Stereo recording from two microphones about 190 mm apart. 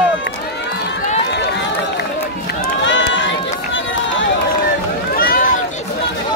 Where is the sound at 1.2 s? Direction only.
65° left (ahead or behind).